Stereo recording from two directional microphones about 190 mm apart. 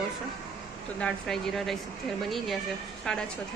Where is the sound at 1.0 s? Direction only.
5° left (ahead or behind).